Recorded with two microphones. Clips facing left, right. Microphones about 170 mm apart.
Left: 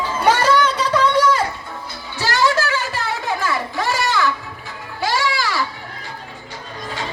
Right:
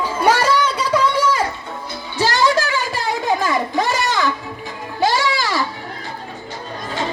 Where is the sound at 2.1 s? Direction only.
20° right (ahead or behind).